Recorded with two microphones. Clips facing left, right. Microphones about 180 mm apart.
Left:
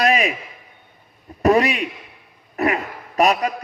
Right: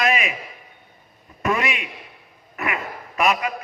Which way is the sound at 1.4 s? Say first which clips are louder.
Left 8 dB; 35° left (ahead or behind).